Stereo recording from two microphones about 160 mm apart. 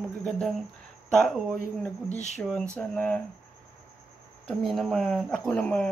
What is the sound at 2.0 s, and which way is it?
Speech, 45° left (ahead or behind).